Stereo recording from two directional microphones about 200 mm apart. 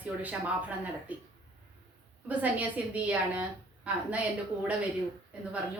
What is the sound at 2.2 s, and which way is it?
Speech, 10° right (ahead or behind).